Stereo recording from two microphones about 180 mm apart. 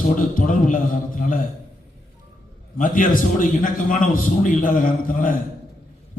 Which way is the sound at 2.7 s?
50° left (ahead or behind).